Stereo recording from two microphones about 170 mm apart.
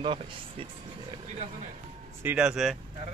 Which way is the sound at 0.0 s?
30° right (ahead or behind).